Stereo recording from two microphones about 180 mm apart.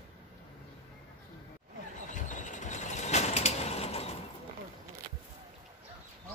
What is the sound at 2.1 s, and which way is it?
Vehicle, 45° left (ahead or behind).